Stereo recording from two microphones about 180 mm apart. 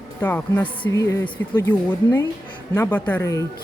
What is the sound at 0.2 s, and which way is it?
Speech, 10° left (ahead or behind).